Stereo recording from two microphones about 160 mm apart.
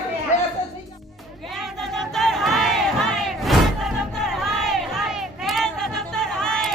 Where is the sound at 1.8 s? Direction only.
Centre (ahead or behind).